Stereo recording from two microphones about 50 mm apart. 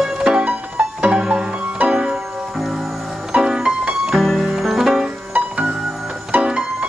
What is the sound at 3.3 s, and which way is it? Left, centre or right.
Music, centre.